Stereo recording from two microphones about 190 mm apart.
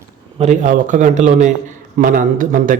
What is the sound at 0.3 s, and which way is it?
A man's voice, 35° right (ahead or behind).